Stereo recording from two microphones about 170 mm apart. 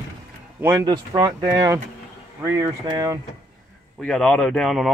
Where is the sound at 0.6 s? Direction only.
15° right (ahead or behind).